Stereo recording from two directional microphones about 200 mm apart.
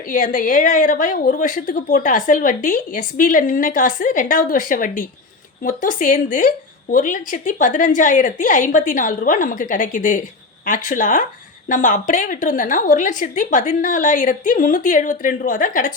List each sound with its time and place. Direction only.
0.1 s a woman's voice: 40° left (ahead or behind)